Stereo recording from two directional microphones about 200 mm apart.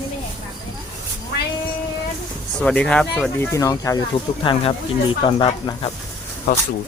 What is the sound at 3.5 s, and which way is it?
Speech, 15° left (ahead or behind).